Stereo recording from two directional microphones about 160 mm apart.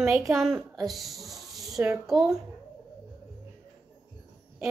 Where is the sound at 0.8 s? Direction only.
Centre (ahead or behind).